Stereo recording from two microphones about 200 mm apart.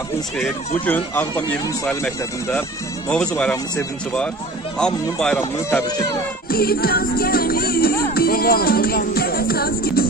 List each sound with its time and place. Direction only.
0.8 s speech: 10° left (ahead or behind)
6.5 s music: 50° left (ahead or behind)